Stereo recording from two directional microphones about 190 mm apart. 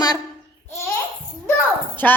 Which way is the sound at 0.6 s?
15° left (ahead or behind).